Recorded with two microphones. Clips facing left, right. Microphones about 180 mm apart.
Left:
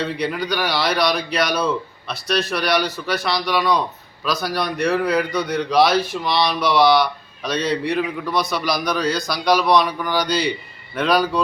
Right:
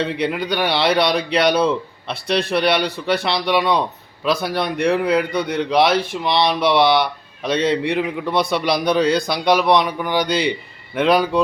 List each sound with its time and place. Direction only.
0.0 s a man's voice: 25° right (ahead or behind)